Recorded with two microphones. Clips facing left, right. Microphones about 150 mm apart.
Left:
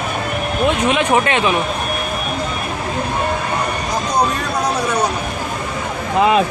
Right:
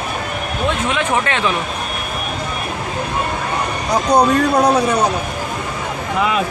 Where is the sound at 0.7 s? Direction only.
15° left (ahead or behind).